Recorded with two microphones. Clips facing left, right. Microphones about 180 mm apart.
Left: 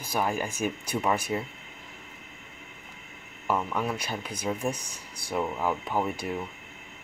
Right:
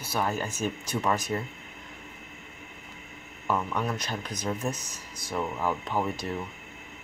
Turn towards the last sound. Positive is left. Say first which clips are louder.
# left 1 dB
turn(degrees=10)  # may be behind; listen again after turning